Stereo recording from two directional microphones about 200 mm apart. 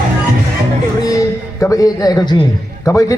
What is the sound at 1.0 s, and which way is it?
A man's voice, 15° left (ahead or behind).